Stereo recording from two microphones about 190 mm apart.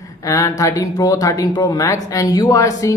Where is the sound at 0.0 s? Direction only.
15° left (ahead or behind).